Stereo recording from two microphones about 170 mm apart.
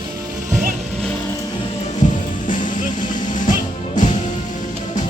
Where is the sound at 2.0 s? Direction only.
50° left (ahead or behind).